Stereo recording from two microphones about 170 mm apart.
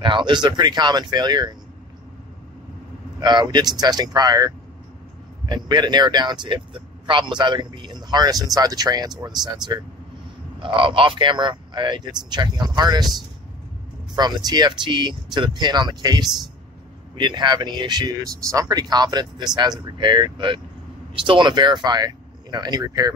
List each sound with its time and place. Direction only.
0.0 s speech: 25° right (ahead or behind)
3.2 s speech: 25° right (ahead or behind)
5.5 s speech: 25° right (ahead or behind)
14.1 s speech: 25° right (ahead or behind)